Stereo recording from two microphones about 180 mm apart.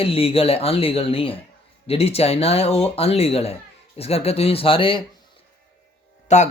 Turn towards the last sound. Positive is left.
turn(degrees=40)  # may be behind; listen again after turning